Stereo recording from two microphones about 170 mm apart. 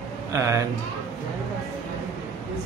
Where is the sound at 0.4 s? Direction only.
20° right (ahead or behind).